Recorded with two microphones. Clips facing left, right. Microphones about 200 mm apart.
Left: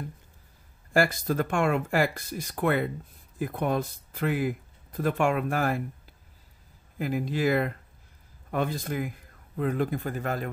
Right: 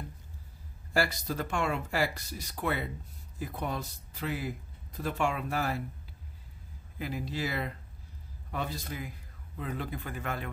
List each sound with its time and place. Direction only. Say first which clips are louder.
0.9 s speech: left 6 dB; 50° left (ahead or behind)
7.0 s speech: left 7 dB; 50° left (ahead or behind)